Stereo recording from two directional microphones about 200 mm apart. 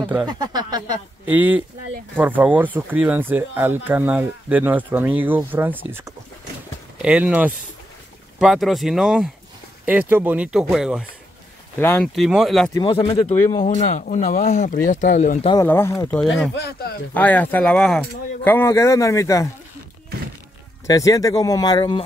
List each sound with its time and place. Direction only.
0.3 s speech: 20° right (ahead or behind)
1.3 s speech: 10° right (ahead or behind)
11.8 s speech: 10° left (ahead or behind)
12.2 s speech: centre (ahead or behind)
12.7 s speech: 25° left (ahead or behind)
15.5 s speech: 10° left (ahead or behind)
16.2 s speech: centre (ahead or behind)
16.5 s speech: 55° left (ahead or behind)
17.1 s speech: 10° left (ahead or behind)
20.8 s speech: 15° left (ahead or behind)